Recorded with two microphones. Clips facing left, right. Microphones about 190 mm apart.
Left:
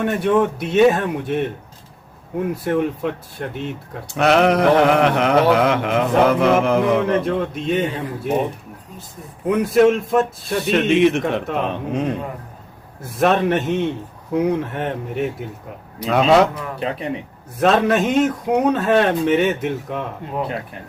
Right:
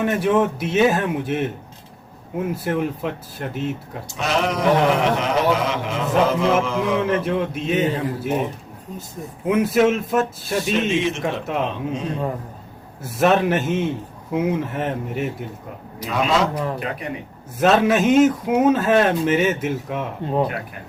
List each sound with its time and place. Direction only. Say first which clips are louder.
0.0 s speech: left 1 dB; centre (ahead or behind)
4.1 s a sound: left 7 dB; 60° left (ahead or behind)
7.3 s speech: left 1 dB; 5° right (ahead or behind)
9.5 s speech: left 3 dB; 5° right (ahead or behind)
10.6 s a sound: left 6 dB; 60° left (ahead or behind)
13.0 s speech: even; 5° right (ahead or behind)
16.0 s a sound: left 6 dB; 65° left (ahead or behind)
17.6 s speech: even; centre (ahead or behind)
20.2 s speech: right 7 dB; 30° right (ahead or behind)